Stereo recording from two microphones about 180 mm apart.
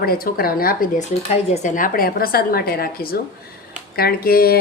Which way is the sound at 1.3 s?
40° left (ahead or behind).